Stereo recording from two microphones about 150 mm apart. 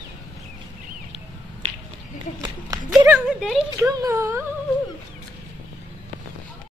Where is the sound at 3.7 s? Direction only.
20° right (ahead or behind).